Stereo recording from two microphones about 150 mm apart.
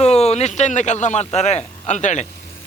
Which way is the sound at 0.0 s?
45° left (ahead or behind).